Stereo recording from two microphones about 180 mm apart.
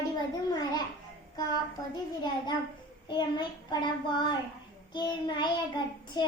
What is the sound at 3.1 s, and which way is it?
A child's voice, 25° left (ahead or behind).